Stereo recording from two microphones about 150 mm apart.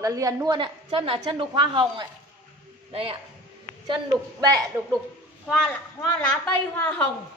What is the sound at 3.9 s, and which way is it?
Speech, 25° right (ahead or behind).